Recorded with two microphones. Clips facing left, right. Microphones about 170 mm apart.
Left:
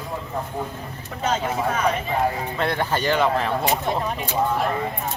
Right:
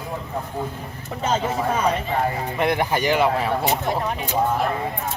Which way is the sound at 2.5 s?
15° right (ahead or behind).